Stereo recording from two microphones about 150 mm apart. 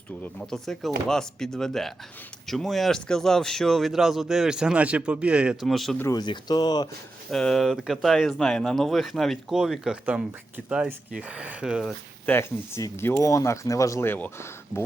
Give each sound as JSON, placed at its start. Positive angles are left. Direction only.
{"t": 0.2, "sound": "speech", "side_deg": 5}
{"t": 6.0, "sound": "speech", "side_deg": 25}
{"t": 7.3, "sound": "speech", "side_deg": 5}